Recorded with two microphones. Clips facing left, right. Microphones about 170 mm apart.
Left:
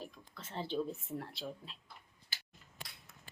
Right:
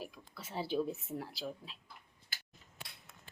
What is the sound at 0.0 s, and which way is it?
Speech, 10° right (ahead or behind).